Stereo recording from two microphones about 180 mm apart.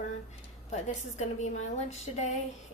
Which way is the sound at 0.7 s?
40° left (ahead or behind).